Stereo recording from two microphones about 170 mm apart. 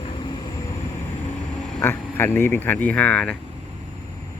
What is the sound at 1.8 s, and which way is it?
Speech, 15° left (ahead or behind).